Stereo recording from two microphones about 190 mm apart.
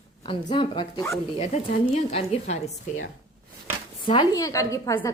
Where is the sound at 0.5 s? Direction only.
25° left (ahead or behind).